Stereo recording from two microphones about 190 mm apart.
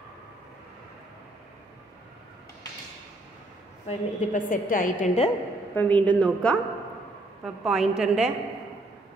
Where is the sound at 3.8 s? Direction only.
40° left (ahead or behind).